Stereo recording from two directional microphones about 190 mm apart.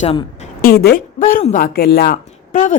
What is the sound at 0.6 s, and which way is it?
A woman's voice, 55° left (ahead or behind).